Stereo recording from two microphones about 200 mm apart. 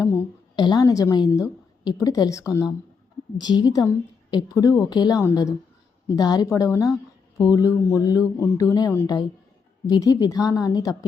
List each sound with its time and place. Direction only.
0.0 s a sound: 15° left (ahead or behind)
0.6 s a woman's voice: 20° left (ahead or behind)
6.1 s mantra: 20° left (ahead or behind)
8.7 s a woman's voice: 15° left (ahead or behind)
9.8 s mantra: 15° left (ahead or behind)